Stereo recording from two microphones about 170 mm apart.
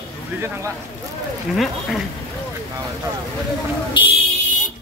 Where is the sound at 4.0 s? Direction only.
30° left (ahead or behind).